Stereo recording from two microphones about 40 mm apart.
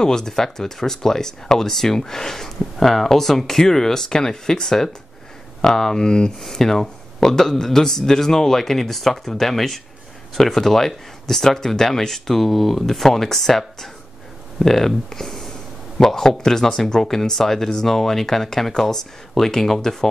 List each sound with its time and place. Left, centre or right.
0.0 s speech: centre
6.4 s speech: centre